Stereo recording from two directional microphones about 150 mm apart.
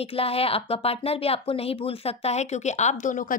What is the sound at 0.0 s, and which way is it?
Speech, 40° left (ahead or behind).